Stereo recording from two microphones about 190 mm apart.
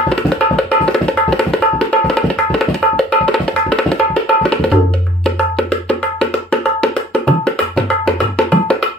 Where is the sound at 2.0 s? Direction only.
Centre (ahead or behind).